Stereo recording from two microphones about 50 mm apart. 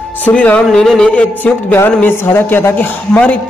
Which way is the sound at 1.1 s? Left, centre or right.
Left.